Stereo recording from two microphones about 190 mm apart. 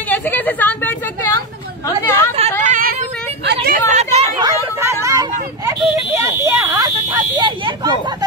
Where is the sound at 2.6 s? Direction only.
45° right (ahead or behind).